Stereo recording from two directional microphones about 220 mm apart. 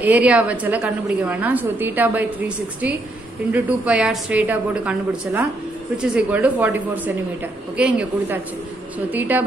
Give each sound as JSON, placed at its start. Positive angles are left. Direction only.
{"t": 0.0, "sound": "a woman's voice", "side_deg": -5}